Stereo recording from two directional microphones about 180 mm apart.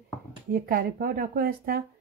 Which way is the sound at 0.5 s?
55° right (ahead or behind).